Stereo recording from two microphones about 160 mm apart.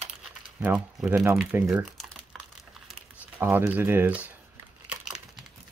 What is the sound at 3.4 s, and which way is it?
Speech, 15° right (ahead or behind).